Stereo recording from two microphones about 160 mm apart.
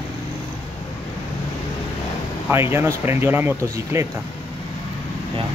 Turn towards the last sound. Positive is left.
turn(degrees=-15)  # may be behind; listen again after turning